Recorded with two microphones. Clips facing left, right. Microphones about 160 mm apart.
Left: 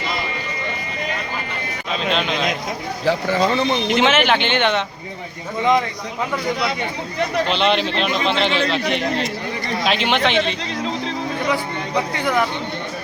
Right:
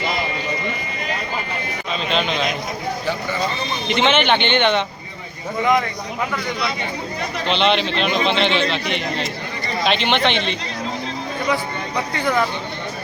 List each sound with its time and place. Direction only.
1.9 s speech: centre (ahead or behind)
3.1 s a man's voice: 90° left
3.8 s speech: centre (ahead or behind)
7.4 s speech: 5° left (ahead or behind)
12.1 s speech: 10° left (ahead or behind)